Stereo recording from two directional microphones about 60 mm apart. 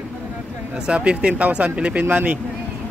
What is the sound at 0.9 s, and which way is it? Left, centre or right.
Speech, centre.